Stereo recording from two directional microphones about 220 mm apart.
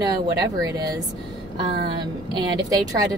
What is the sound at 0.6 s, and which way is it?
A woman's voice, 15° right (ahead or behind).